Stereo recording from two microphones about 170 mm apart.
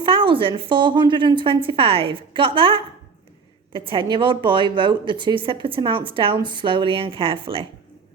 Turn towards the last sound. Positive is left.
turn(degrees=-30)  # may be behind; listen again after turning